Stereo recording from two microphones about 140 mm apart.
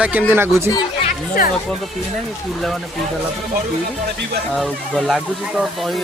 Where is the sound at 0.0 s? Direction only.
10° right (ahead or behind).